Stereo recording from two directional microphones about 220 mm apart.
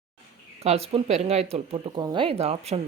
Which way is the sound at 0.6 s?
30° right (ahead or behind).